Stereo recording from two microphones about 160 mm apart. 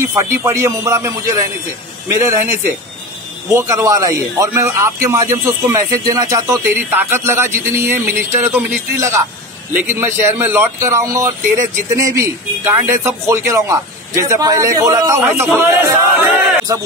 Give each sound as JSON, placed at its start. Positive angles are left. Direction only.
{"t": 0.1, "sound": "a man's voice", "side_deg": -20}
{"t": 3.5, "sound": "a man's voice", "side_deg": -20}